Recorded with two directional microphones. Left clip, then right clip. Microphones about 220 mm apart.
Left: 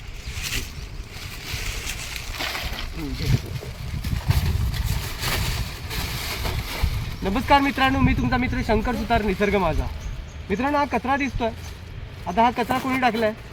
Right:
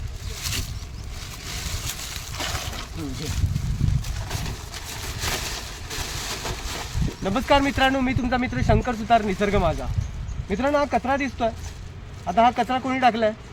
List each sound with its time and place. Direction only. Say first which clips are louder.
0.5 s boat: left 1 dB; 35° right (ahead or behind)
2.4 s boat: left 1 dB; 15° right (ahead or behind)
5.2 s vehicle: left 1 dB; 5° right (ahead or behind)
7.3 s speech: left 1 dB; 15° right (ahead or behind)